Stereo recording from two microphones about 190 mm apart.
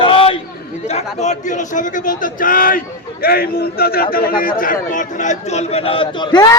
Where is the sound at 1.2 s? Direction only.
40° left (ahead or behind).